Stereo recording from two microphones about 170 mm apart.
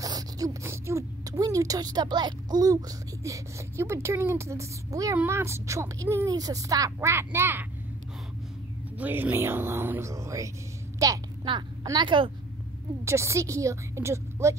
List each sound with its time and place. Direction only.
0.0 s speech: 20° right (ahead or behind)
8.9 s a woman's voice: 10° right (ahead or behind); by 12.3 s 30° right (ahead or behind)
13.0 s speech: 15° right (ahead or behind)